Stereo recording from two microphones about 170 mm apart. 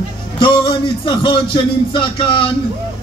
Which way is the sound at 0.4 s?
30° left (ahead or behind).